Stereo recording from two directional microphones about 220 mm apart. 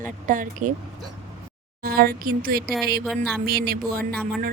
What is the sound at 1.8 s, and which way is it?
Speech, 40° right (ahead or behind).